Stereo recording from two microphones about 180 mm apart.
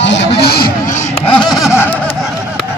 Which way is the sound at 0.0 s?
80° left.